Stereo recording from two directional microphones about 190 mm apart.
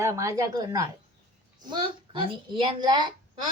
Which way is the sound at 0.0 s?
15° right (ahead or behind).